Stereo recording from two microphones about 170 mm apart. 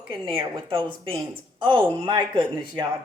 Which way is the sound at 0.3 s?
30° right (ahead or behind).